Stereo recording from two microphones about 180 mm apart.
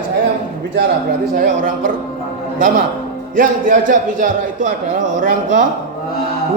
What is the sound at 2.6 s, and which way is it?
Speech, 55° right (ahead or behind).